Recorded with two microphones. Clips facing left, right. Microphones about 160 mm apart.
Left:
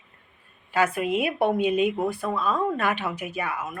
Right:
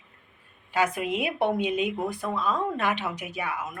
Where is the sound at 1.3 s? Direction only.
5° left (ahead or behind).